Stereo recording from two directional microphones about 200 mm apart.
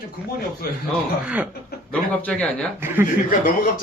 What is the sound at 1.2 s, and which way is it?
Speech, 5° right (ahead or behind).